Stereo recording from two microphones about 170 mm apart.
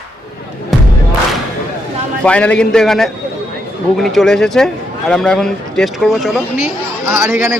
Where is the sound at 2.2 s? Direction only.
5° left (ahead or behind).